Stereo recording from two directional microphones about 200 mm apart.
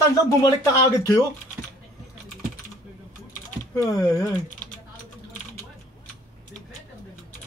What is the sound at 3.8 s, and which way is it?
Speech, 15° left (ahead or behind).